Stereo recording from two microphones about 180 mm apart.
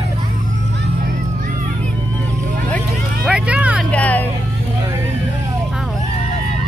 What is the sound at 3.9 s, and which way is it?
Vehicle, 10° left (ahead or behind).